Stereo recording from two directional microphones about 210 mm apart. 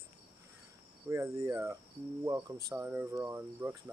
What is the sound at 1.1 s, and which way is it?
Cricket, 15° right (ahead or behind).